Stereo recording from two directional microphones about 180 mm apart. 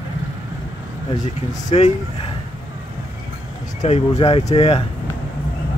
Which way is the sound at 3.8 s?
35° left (ahead or behind).